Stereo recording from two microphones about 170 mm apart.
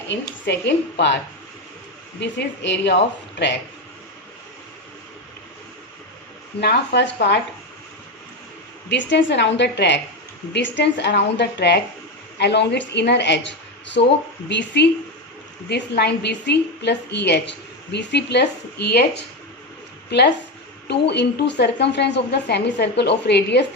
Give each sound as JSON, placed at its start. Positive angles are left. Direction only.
{"t": 0.1, "sound": "a woman's voice", "side_deg": 90}
{"t": 2.2, "sound": "a woman's voice", "side_deg": 90}
{"t": 6.6, "sound": "a woman's voice", "side_deg": 85}
{"t": 8.9, "sound": "a woman's voice", "side_deg": 90}
{"t": 15.7, "sound": "a woman's voice", "side_deg": 80}